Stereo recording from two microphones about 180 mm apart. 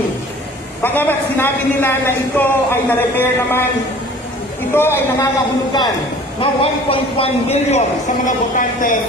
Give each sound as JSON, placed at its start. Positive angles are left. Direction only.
{"t": 0.8, "sound": "a woman's voice", "side_deg": 10}
{"t": 4.7, "sound": "a woman's voice", "side_deg": 15}
{"t": 6.4, "sound": "a man's voice", "side_deg": 30}
{"t": 8.3, "sound": "speech", "side_deg": 50}